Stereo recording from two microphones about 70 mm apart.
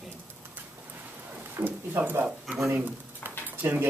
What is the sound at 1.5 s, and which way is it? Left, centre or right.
Speech, right.